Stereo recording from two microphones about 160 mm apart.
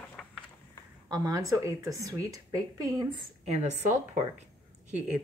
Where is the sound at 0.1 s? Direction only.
5° left (ahead or behind).